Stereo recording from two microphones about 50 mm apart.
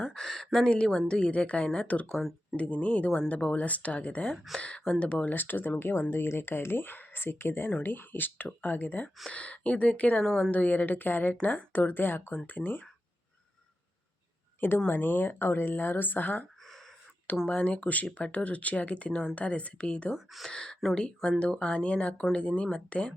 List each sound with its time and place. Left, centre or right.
0.1 s a sound: centre
0.9 s speech: centre
2.1 s speech: centre
2.6 s speech: left
5.2 s speech: left
9.3 s speech: left
10.2 s a woman's voice: centre
10.5 s speech: left
14.8 s speech: left
16.6 s a sound: centre
17.4 s speech: left
20.1 s speech: centre
20.5 s speech: centre